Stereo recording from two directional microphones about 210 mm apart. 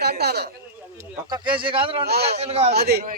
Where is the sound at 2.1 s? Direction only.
50° right (ahead or behind).